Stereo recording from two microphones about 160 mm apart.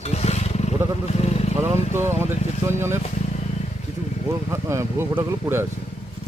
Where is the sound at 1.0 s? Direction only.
40° left (ahead or behind).